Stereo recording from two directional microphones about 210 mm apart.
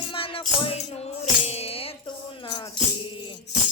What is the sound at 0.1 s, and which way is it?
Music, 25° left (ahead or behind).